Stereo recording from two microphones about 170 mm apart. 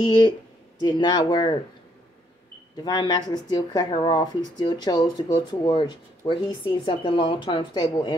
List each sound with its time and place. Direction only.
0.7 s speech: 25° left (ahead or behind)
2.8 s speech: 25° left (ahead or behind)